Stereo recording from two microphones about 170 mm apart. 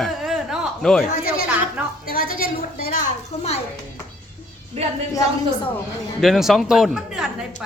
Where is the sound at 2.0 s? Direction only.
60° left (ahead or behind).